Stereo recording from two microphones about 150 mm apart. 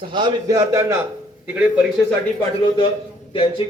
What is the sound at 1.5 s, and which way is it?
Speech, 10° right (ahead or behind).